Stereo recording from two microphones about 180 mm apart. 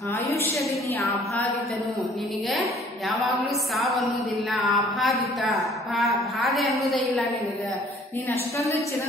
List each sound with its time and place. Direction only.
3.7 s a woman's voice: centre (ahead or behind)
8.3 s a woman's voice: 15° left (ahead or behind)